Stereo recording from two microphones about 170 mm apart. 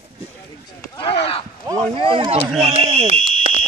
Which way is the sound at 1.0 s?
35° left (ahead or behind).